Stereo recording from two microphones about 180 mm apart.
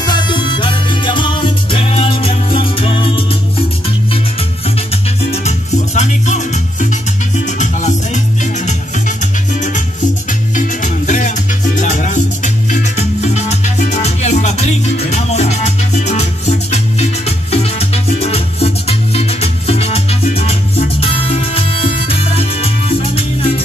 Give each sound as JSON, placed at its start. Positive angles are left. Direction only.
{"t": 0.0, "sound": "music", "side_deg": 25}
{"t": 5.2, "sound": "music", "side_deg": 35}
{"t": 10.5, "sound": "music", "side_deg": 45}